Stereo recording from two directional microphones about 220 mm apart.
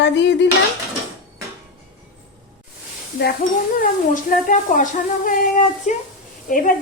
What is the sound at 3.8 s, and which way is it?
Speech, 35° left (ahead or behind).